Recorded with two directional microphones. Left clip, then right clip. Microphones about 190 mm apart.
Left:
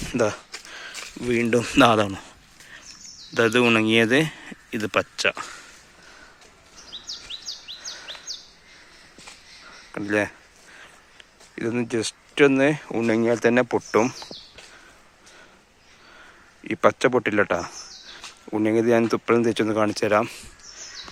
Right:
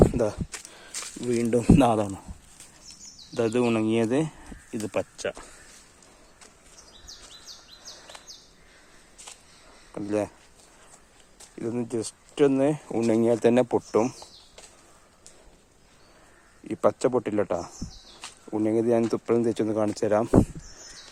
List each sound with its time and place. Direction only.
0.1 s a sound: 10° right (ahead or behind)
0.9 s speech: centre (ahead or behind)
3.3 s speech: centre (ahead or behind)
6.9 s chirp: 40° right (ahead or behind)
9.9 s speech: 5° left (ahead or behind)
11.5 s speech: 10° left (ahead or behind); by 13.8 s 15° right (ahead or behind)
13.9 s speech: centre (ahead or behind)
16.6 s speech: centre (ahead or behind)